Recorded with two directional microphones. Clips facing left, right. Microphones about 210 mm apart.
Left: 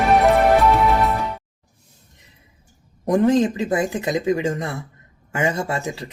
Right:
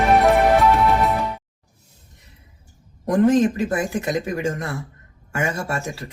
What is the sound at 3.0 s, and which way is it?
A man's voice, 20° left (ahead or behind).